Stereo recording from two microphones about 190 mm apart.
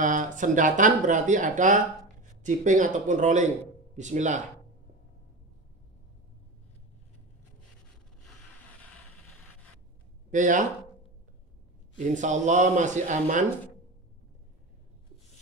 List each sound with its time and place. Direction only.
0.0 s speech: 45° right (ahead or behind)
10.3 s speech: 40° right (ahead or behind)
12.1 s speech: 40° right (ahead or behind)